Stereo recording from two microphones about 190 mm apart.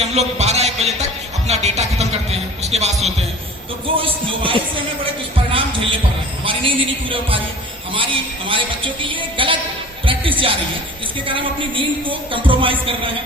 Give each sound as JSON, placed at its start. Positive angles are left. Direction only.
{"t": 0.0, "sound": "music", "side_deg": -35}
{"t": 1.5, "sound": "a sound", "side_deg": -35}
{"t": 3.8, "sound": "a man's voice", "side_deg": -30}
{"t": 6.4, "sound": "a man's voice", "side_deg": -25}